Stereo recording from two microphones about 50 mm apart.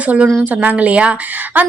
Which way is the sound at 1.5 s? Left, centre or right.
Right.